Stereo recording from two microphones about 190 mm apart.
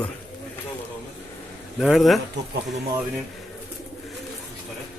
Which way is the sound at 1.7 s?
Centre (ahead or behind).